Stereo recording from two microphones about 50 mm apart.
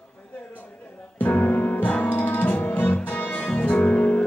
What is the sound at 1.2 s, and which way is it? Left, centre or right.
Music, left.